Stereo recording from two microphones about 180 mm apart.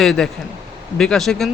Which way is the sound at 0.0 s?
Centre (ahead or behind).